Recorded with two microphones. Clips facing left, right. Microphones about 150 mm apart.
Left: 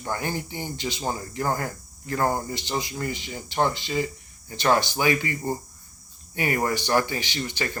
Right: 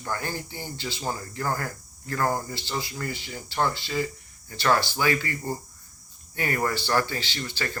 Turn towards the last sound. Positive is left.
turn(degrees=15)  # may be behind; listen again after turning